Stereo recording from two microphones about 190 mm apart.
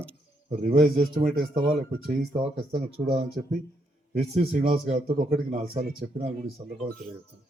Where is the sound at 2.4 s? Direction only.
30° right (ahead or behind).